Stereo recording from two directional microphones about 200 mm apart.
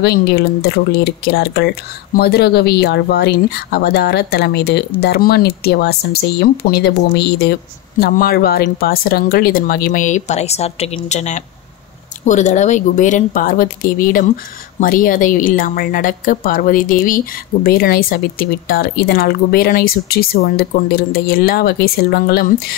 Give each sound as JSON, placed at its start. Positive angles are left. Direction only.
{"t": 0.0, "sound": "speech", "side_deg": 55}